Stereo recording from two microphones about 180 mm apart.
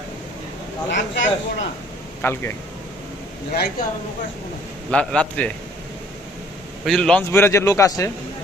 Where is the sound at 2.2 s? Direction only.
10° left (ahead or behind).